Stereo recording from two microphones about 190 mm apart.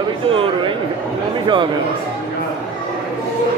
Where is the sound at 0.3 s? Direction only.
25° right (ahead or behind).